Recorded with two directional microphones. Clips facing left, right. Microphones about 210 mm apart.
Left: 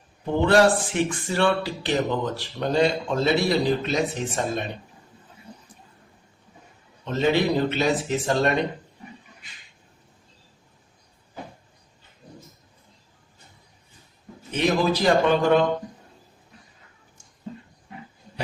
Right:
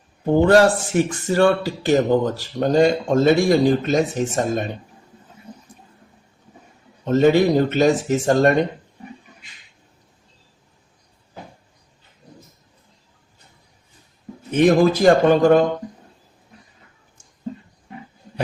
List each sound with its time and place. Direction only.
0.3 s speech: 40° right (ahead or behind)
7.0 s speech: 45° right (ahead or behind)
14.5 s speech: 50° right (ahead or behind)